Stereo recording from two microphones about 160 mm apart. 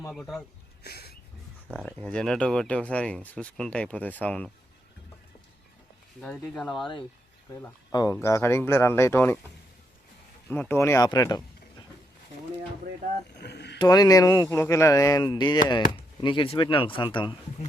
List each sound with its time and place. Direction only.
0.1 s speech: centre (ahead or behind)
0.8 s a sound: 80° left
1.8 s speech: 5° left (ahead or behind)
6.2 s speech: centre (ahead or behind)
7.5 s speech: 20° left (ahead or behind)
10.5 s speech: 10° left (ahead or behind)
13.4 s rowboat: 90° left
13.7 s speech: 25° left (ahead or behind)